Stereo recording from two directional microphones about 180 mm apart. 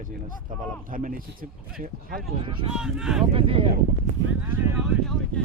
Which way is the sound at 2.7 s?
5° right (ahead or behind).